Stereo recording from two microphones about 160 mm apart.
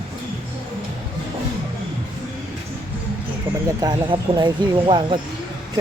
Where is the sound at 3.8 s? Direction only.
25° right (ahead or behind).